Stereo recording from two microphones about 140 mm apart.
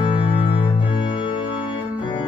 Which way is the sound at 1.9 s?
35° left (ahead or behind).